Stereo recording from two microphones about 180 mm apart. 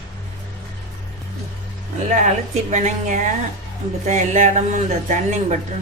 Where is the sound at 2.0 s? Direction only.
45° right (ahead or behind).